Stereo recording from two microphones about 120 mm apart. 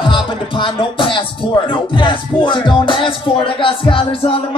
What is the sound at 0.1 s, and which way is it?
Music, 45° left (ahead or behind).